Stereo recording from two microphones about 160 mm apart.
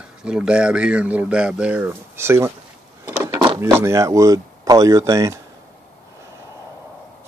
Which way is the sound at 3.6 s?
15° right (ahead or behind).